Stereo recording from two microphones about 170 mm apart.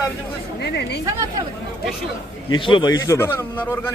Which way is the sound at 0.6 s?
75° left (ahead or behind).